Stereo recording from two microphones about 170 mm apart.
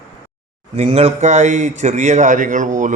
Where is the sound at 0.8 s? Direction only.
40° right (ahead or behind).